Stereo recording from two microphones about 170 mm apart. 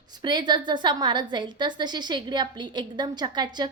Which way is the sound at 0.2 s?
25° right (ahead or behind).